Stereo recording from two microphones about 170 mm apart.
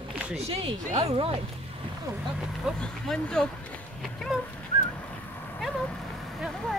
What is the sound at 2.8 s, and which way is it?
Speech, 5° left (ahead or behind).